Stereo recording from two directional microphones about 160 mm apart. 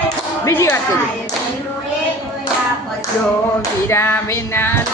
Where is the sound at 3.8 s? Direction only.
15° left (ahead or behind).